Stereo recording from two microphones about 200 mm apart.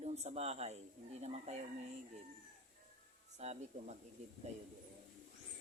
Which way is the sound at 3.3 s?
35° right (ahead or behind).